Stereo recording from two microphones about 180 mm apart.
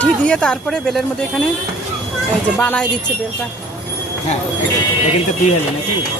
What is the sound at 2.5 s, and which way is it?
Speech, 5° left (ahead or behind).